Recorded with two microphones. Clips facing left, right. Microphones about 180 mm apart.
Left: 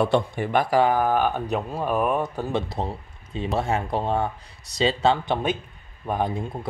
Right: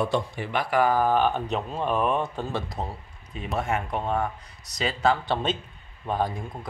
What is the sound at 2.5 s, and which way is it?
Speech, 30° left (ahead or behind).